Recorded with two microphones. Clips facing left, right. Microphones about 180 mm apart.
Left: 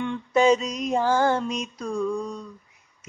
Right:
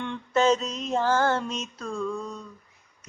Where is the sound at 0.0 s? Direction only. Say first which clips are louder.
Left 3 dB; 10° left (ahead or behind).